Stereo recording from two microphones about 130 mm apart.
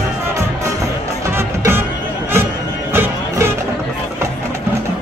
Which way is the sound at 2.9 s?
20° right (ahead or behind).